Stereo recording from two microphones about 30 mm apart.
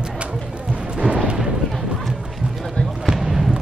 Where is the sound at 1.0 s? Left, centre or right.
Right.